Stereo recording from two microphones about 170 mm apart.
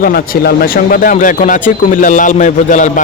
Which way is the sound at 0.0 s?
65° left (ahead or behind).